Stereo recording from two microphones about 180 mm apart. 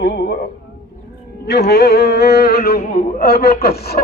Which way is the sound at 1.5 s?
65° left (ahead or behind).